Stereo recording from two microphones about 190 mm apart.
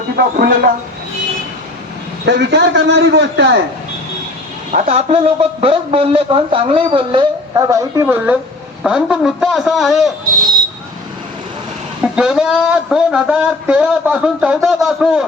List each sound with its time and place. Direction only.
0.2 s speech: 55° right (ahead or behind)
2.2 s a man's voice: 65° right (ahead or behind)
4.7 s a man's voice: 40° right (ahead or behind); by 10.1 s centre (ahead or behind)
12.1 s speech: 5° right (ahead or behind)